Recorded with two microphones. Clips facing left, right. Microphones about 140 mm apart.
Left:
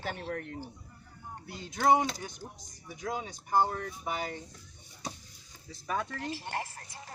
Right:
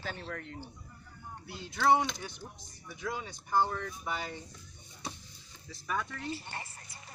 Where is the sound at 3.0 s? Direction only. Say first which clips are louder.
Left 2 dB; 45° left (ahead or behind).